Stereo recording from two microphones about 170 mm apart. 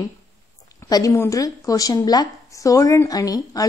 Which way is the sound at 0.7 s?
20° left (ahead or behind).